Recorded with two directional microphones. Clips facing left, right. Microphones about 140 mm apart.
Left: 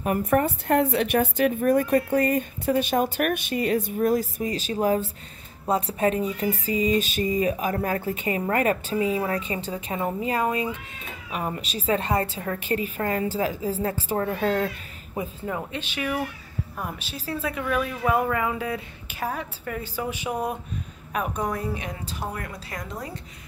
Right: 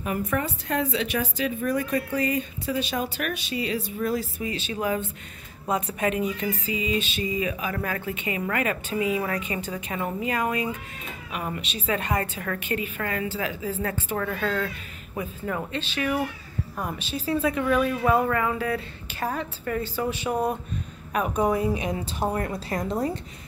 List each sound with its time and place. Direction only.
0.3 s a woman's voice: 50° left (ahead or behind); by 14.7 s 35° left (ahead or behind)
15.1 s a woman's voice: 15° left (ahead or behind)
21.4 s a woman's voice: 10° right (ahead or behind); by 23.1 s 30° right (ahead or behind)